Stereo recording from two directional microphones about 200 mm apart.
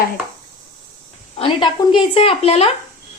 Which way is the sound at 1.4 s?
25° left (ahead or behind).